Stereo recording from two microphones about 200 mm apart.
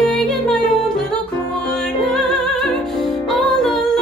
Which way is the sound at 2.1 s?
Centre (ahead or behind).